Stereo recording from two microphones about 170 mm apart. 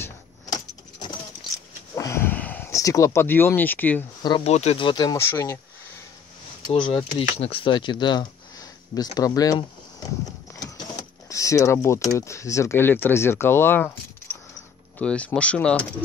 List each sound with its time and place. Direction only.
2.0 s a sound: 15° left (ahead or behind)
4.5 s speech: 40° left (ahead or behind); by 5.6 s 15° left (ahead or behind)
6.7 s speech: 30° left (ahead or behind)
11.0 s speech: 20° left (ahead or behind)